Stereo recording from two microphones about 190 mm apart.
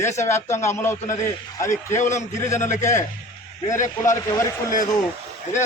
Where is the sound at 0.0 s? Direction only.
15° left (ahead or behind).